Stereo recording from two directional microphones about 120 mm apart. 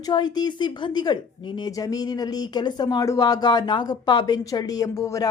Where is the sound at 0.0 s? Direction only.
35° left (ahead or behind).